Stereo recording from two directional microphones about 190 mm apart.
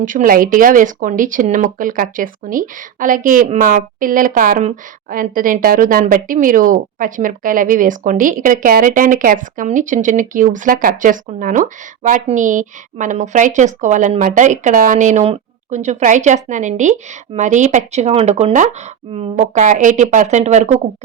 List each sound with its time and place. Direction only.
0.0 s speech: 45° right (ahead or behind)